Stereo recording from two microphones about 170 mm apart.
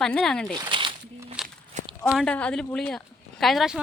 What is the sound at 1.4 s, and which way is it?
Walk, 5° right (ahead or behind).